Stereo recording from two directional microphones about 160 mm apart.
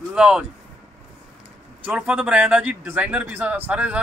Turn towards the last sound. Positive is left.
turn(degrees=-10)  # may be behind; listen again after turning